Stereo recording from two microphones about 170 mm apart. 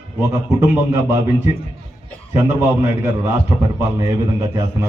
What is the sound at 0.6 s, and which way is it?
A man's voice, 15° right (ahead or behind).